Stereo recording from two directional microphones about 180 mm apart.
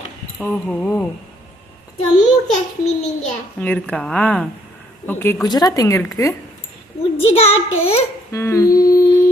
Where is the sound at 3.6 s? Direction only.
5° left (ahead or behind).